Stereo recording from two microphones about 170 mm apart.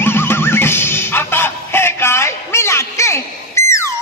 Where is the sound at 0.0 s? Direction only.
15° left (ahead or behind).